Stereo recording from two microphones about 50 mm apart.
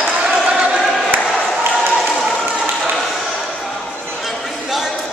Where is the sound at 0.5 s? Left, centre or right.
Centre.